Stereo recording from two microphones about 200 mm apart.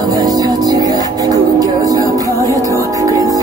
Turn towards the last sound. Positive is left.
turn(degrees=-15)  # may be behind; listen again after turning